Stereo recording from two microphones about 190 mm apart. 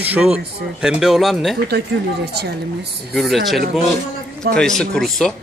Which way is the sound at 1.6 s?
60° right (ahead or behind).